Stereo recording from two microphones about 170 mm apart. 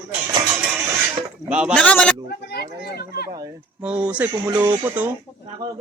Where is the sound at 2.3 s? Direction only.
70° left (ahead or behind).